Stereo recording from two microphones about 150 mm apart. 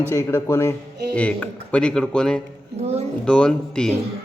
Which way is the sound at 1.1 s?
10° left (ahead or behind).